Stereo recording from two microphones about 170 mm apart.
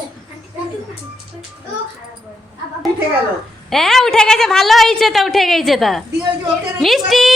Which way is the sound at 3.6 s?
Centre (ahead or behind).